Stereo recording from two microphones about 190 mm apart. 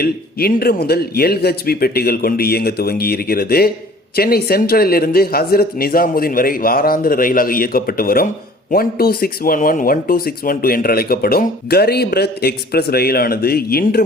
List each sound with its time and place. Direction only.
0.0 s speech: 55° left (ahead or behind)